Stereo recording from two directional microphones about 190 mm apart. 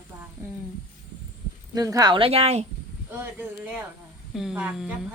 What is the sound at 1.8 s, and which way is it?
Speech, 20° right (ahead or behind).